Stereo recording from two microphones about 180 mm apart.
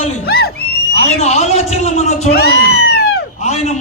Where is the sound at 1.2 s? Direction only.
40° left (ahead or behind).